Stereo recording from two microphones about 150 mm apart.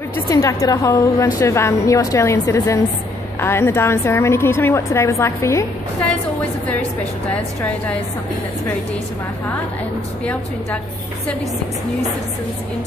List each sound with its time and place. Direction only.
0.3 s a woman's voice: 20° left (ahead or behind)